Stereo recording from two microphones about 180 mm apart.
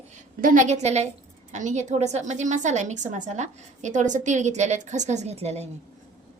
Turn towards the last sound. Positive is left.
turn(degrees=-35)  # may be behind; listen again after turning